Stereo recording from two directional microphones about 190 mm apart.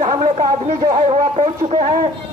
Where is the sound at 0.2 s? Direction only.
40° right (ahead or behind).